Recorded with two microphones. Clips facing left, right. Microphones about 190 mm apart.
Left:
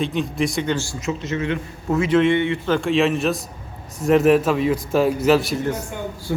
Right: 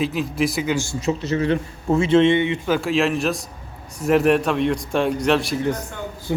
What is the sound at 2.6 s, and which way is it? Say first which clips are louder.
A man's voice: left 4 dB; 5° right (ahead or behind).